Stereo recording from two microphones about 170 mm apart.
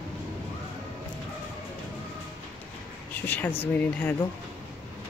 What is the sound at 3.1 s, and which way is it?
Speech, 10° left (ahead or behind).